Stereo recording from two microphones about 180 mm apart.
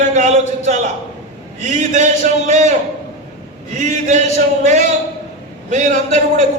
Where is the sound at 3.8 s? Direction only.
45° right (ahead or behind).